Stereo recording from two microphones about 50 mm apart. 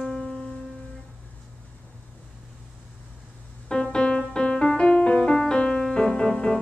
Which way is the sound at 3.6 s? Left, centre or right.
Centre.